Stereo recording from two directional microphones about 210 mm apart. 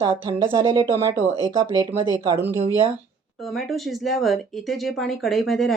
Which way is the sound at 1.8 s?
20° right (ahead or behind).